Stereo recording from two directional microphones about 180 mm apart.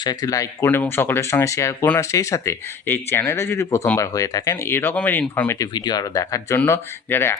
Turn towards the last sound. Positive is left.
turn(degrees=15)  # may be behind; listen again after turning